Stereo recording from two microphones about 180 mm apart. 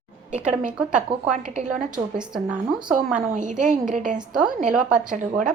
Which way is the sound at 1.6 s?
45° right (ahead or behind).